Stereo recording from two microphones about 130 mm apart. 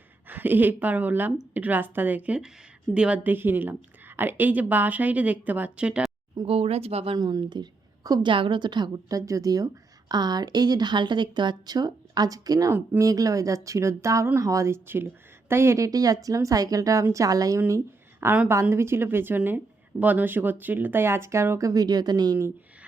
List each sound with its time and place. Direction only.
0.3 s a woman's voice: 15° right (ahead or behind)
6.4 s speech: 45° right (ahead or behind)
7.2 s a woman's voice: 35° right (ahead or behind)
22.4 s speech: 20° right (ahead or behind)